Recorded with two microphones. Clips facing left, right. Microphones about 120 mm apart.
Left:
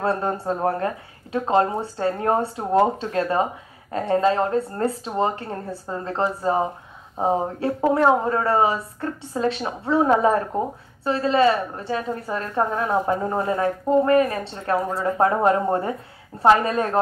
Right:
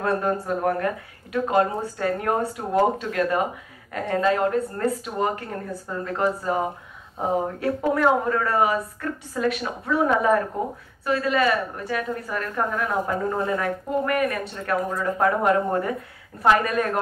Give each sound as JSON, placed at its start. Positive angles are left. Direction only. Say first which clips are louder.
{"t": 0.0, "sound": "a woman's voice", "louder": "even", "side_deg": 30}